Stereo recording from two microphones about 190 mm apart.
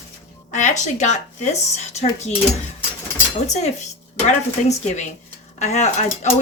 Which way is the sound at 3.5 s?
35° left (ahead or behind).